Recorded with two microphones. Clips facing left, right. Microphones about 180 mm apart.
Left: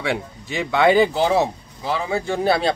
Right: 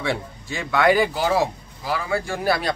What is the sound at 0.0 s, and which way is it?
Speech, 15° left (ahead or behind).